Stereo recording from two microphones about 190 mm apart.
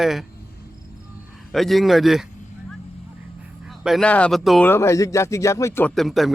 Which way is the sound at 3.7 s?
Centre (ahead or behind).